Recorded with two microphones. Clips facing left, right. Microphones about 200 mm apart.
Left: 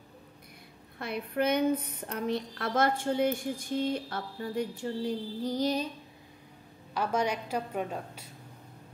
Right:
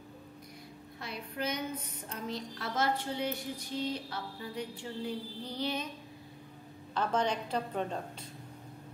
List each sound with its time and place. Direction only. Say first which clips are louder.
0.9 s speech: left 9 dB; 55° left (ahead or behind); by 5.9 s 40° left (ahead or behind)
6.9 s a woman's voice: left 1 dB; 10° left (ahead or behind)